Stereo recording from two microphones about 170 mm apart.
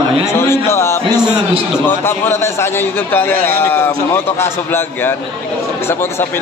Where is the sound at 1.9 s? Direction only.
15° left (ahead or behind).